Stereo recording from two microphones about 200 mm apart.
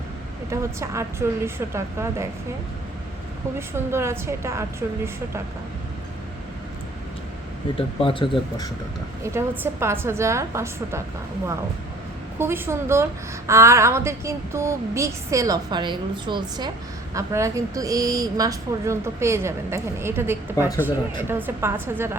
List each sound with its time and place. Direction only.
0.5 s speech: 15° right (ahead or behind)
3.9 s speech: 15° right (ahead or behind)
7.8 s speech: 25° left (ahead or behind)
9.2 s speech: 15° right (ahead or behind)
12.4 s speech: 10° right (ahead or behind)